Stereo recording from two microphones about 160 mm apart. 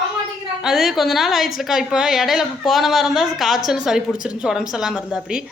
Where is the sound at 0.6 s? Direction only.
5° right (ahead or behind).